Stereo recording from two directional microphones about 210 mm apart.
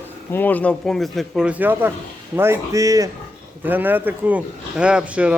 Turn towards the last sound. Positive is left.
turn(degrees=-5)  # may be behind; listen again after turning